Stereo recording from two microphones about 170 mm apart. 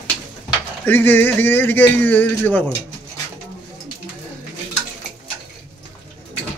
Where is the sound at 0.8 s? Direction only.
10° left (ahead or behind).